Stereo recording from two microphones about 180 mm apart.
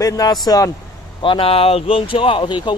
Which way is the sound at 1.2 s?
30° left (ahead or behind).